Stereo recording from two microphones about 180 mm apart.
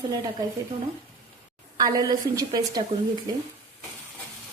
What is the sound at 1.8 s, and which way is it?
A woman's voice, 20° right (ahead or behind).